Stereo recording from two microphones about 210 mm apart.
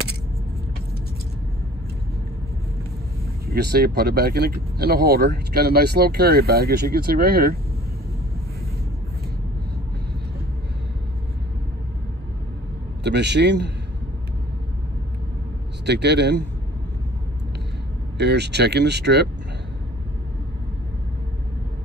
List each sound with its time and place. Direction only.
3.4 s speech: 50° right (ahead or behind)
13.0 s a man's voice: 55° right (ahead or behind)
15.8 s speech: 55° right (ahead or behind)
18.1 s speech: 55° right (ahead or behind)